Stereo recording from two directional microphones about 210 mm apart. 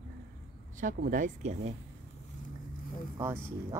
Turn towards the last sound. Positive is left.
turn(degrees=-10)  # may be behind; listen again after turning